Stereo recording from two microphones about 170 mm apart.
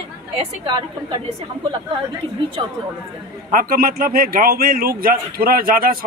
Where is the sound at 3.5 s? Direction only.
60° right (ahead or behind).